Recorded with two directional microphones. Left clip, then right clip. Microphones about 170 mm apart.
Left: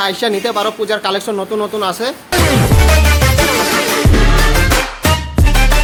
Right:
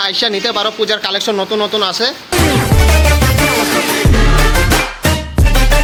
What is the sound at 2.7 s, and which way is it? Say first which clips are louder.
Music: even; centre (ahead or behind).